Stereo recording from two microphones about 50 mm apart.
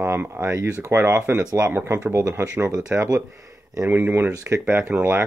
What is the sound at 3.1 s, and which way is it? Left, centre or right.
Speech, right.